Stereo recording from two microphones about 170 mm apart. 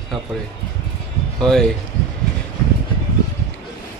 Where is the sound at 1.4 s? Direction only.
5° left (ahead or behind).